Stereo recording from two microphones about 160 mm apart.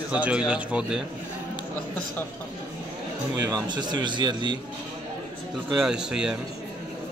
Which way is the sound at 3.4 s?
25° right (ahead or behind).